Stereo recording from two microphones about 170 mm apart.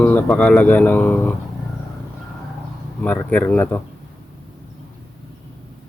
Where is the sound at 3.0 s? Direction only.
10° left (ahead or behind).